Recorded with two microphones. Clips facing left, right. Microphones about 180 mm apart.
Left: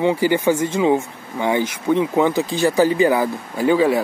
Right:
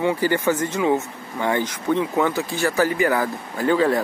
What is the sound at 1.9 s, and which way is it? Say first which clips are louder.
Speech: left 4 dB; 20° left (ahead or behind).